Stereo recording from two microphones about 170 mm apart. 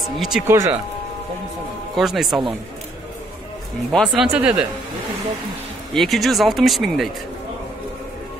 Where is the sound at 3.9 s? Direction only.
5° left (ahead or behind).